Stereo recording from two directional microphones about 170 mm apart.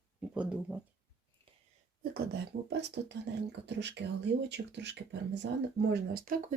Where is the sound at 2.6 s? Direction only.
90° right.